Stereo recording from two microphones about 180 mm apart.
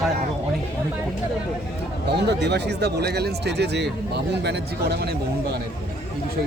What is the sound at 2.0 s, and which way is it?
Speech, 70° right (ahead or behind).